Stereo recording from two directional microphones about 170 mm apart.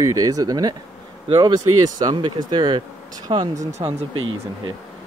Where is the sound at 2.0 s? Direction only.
25° right (ahead or behind).